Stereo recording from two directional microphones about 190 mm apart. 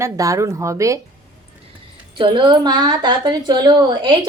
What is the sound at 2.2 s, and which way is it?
A woman's voice, 25° right (ahead or behind).